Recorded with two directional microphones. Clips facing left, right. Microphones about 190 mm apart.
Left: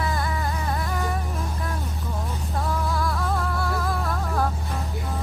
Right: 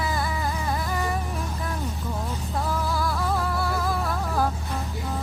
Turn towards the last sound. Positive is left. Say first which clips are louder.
# even
turn(degrees=-5)  # may be behind; listen again after turning